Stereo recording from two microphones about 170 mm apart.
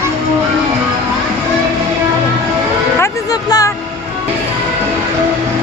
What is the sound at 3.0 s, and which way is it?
Music, 20° left (ahead or behind).